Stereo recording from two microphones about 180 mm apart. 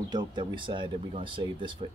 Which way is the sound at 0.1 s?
25° right (ahead or behind).